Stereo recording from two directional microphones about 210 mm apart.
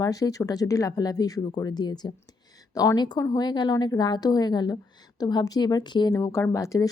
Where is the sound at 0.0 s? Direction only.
15° left (ahead or behind).